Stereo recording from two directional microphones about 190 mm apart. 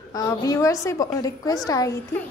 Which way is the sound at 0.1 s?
20° left (ahead or behind).